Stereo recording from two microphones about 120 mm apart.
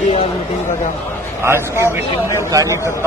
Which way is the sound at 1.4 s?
20° right (ahead or behind).